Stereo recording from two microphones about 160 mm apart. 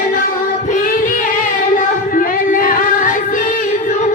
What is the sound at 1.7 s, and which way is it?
Music, 60° left (ahead or behind).